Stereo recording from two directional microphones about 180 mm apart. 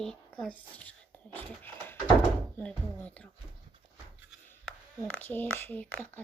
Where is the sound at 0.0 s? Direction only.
5° left (ahead or behind).